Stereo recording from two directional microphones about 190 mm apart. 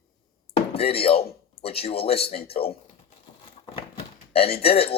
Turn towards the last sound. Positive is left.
turn(degrees=30)  # may be behind; listen again after turning